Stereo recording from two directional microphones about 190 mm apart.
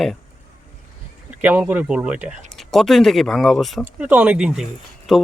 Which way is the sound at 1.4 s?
10° right (ahead or behind).